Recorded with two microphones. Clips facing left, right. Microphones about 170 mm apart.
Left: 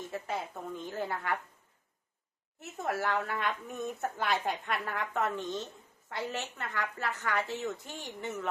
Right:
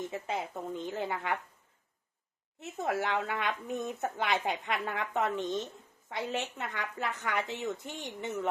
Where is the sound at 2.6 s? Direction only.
20° right (ahead or behind).